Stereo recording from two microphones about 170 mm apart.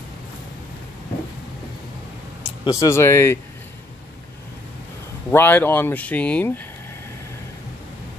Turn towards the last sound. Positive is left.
turn(degrees=10)  # may be behind; listen again after turning